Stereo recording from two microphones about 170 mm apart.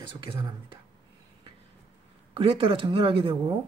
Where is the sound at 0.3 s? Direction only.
30° right (ahead or behind).